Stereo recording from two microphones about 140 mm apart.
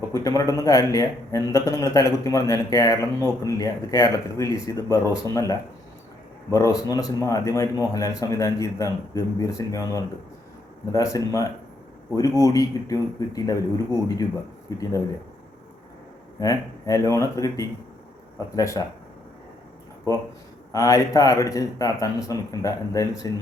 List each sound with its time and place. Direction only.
0.1 s speech: 25° left (ahead or behind)
14.7 s speech: 25° left (ahead or behind)
16.4 s speech: 25° left (ahead or behind)
20.7 s speech: 25° left (ahead or behind)